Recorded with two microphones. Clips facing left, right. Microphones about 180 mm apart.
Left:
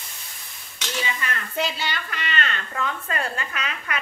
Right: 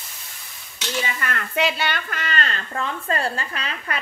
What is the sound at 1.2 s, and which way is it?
A woman's voice, 60° right (ahead or behind).